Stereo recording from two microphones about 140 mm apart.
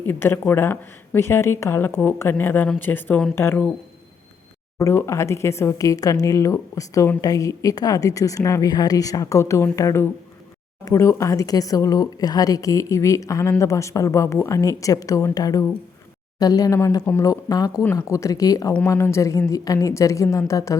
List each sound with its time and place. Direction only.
0.0 s a woman's voice: 15° left (ahead or behind)
4.8 s speech: 20° left (ahead or behind)